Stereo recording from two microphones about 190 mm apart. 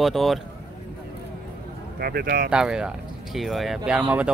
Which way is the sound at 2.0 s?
55° right (ahead or behind).